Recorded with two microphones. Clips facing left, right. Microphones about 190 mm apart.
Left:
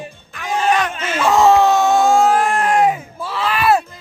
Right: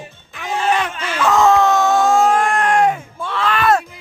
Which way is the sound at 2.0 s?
5° left (ahead or behind).